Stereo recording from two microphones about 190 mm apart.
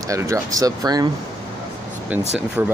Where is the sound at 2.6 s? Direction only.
10° right (ahead or behind).